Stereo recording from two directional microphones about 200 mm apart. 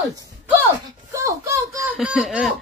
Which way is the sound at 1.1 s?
15° right (ahead or behind).